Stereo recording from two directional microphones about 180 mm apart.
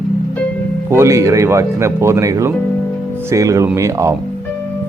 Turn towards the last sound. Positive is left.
turn(degrees=-15)  # may be behind; listen again after turning